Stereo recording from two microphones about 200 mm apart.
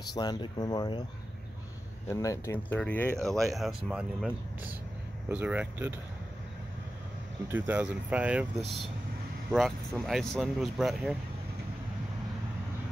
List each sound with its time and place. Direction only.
0.1 s speech: 20° left (ahead or behind)
2.0 s speech: 15° left (ahead or behind); by 4.3 s centre (ahead or behind)
5.3 s speech: 5° right (ahead or behind)
7.5 s speech: 10° right (ahead or behind)